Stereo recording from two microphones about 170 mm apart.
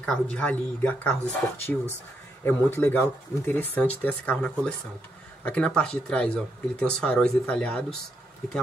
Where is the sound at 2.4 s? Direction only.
10° left (ahead or behind).